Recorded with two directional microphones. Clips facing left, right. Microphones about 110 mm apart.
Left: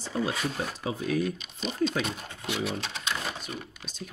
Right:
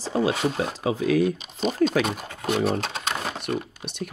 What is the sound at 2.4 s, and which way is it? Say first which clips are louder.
Speech: right 8 dB; 50° right (ahead or behind).